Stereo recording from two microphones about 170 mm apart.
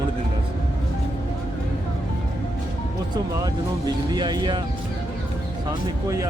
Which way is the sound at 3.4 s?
25° right (ahead or behind).